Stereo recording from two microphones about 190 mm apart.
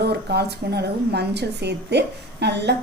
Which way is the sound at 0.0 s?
60° right (ahead or behind).